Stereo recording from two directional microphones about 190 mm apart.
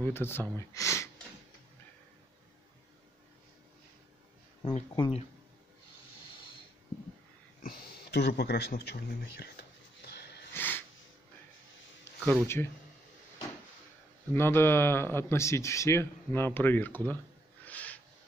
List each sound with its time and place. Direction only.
0.0 s speech: 10° left (ahead or behind)
4.6 s speech: 25° left (ahead or behind)
7.6 s a sound: 55° left (ahead or behind)
10.5 s wheeze: 10° left (ahead or behind)
12.3 s speech: 10° left (ahead or behind)
14.3 s speech: 10° left (ahead or behind)
17.6 s a sound: 10° left (ahead or behind)